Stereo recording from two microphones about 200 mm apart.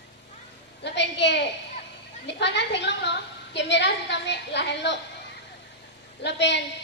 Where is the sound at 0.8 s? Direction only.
60° left (ahead or behind).